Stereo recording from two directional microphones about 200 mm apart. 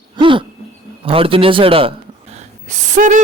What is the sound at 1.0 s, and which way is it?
Speech, 25° right (ahead or behind).